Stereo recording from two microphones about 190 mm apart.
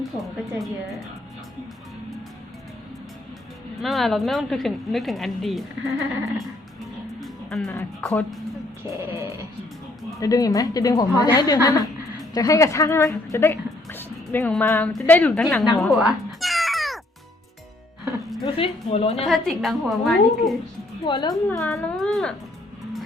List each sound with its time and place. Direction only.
3.8 s a woman's voice: centre (ahead or behind)
7.2 s music: centre (ahead or behind)
7.8 s a woman's voice: 10° left (ahead or behind)
8.9 s dog: 15° right (ahead or behind)
10.2 s a woman's voice: 20° left (ahead or behind); by 17.0 s centre (ahead or behind)
18.4 s a woman's voice: 30° left (ahead or behind)
19.3 s a woman's voice: centre (ahead or behind)
21.1 s a woman's voice: 20° left (ahead or behind)
21.5 s a woman's voice: 5° left (ahead or behind)